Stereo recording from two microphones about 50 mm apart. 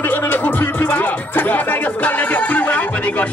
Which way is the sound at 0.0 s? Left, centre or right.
Left.